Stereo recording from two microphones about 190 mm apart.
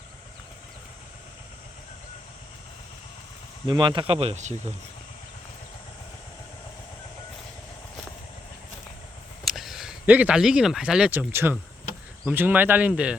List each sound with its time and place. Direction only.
3.7 s speech: 25° right (ahead or behind)
9.4 s speech: centre (ahead or behind)